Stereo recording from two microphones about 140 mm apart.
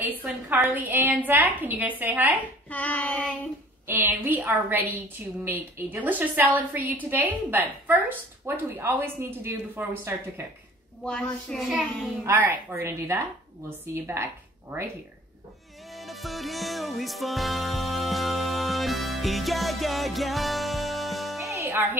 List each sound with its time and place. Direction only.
0.0 s a woman's voice: 10° right (ahead or behind)
2.7 s child singing: 10° left (ahead or behind)
3.8 s a woman's voice: 15° right (ahead or behind)
11.1 s child singing: 5° left (ahead or behind)
12.3 s a woman's voice: 10° right (ahead or behind)
15.9 s music: centre (ahead or behind)
21.5 s music: 20° right (ahead or behind)